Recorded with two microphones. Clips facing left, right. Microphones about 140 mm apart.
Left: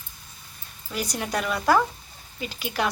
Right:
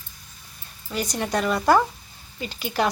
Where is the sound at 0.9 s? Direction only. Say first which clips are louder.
Right 3 dB; 5° left (ahead or behind).